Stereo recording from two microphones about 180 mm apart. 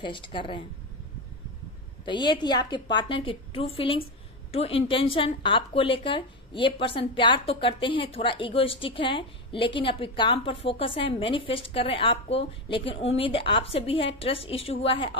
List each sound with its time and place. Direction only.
0.0 s speech: 30° left (ahead or behind)
2.0 s speech: 25° left (ahead or behind)